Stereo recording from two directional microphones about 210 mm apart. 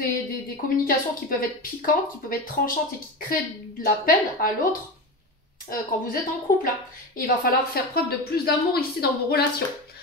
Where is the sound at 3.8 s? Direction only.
40° left (ahead or behind).